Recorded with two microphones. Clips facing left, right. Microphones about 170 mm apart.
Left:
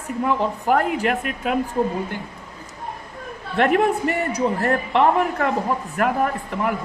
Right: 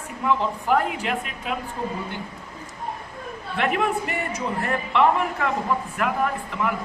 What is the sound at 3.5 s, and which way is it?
Speech, 45° left (ahead or behind).